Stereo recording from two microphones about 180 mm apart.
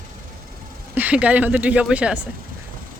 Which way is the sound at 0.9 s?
10° right (ahead or behind).